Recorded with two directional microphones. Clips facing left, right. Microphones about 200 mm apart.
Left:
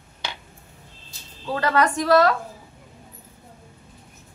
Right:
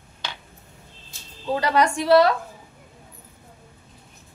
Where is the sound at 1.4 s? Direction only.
15° right (ahead or behind).